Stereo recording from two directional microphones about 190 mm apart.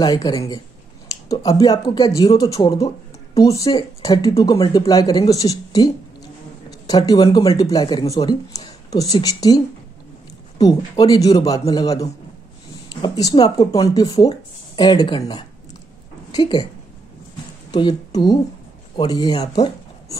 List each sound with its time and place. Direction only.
0.0 s speech: 20° left (ahead or behind)
10.6 s a woman's voice: 20° left (ahead or behind)
17.6 s a woman's voice: 25° left (ahead or behind)
19.5 s a sound: 20° left (ahead or behind)